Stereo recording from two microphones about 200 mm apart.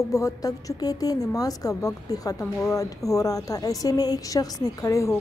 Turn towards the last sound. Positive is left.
turn(degrees=15)  # may be behind; listen again after turning